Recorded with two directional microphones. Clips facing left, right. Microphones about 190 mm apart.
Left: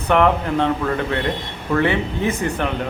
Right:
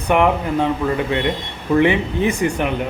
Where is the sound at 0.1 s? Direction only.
10° right (ahead or behind).